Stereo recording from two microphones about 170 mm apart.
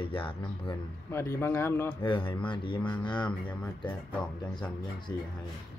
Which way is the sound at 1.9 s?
30° left (ahead or behind).